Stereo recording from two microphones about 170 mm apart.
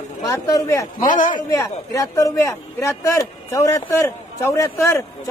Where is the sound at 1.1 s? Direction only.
50° left (ahead or behind).